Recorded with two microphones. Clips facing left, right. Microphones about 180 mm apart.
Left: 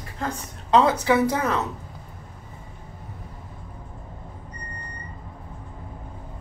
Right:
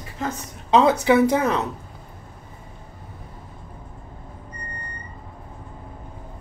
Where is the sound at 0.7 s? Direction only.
20° right (ahead or behind).